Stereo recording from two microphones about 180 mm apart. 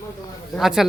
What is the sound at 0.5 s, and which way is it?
Speech, centre (ahead or behind).